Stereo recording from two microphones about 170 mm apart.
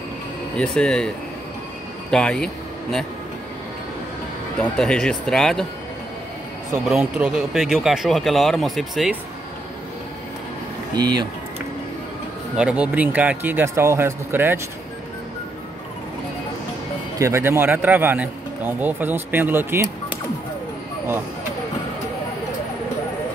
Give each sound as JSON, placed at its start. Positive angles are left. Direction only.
{"t": 0.6, "sound": "speech", "side_deg": 5}
{"t": 4.6, "sound": "speech", "side_deg": 5}
{"t": 6.9, "sound": "speech", "side_deg": -5}
{"t": 11.0, "sound": "speech", "side_deg": -25}
{"t": 12.5, "sound": "speech", "side_deg": -5}
{"t": 17.2, "sound": "speech", "side_deg": -15}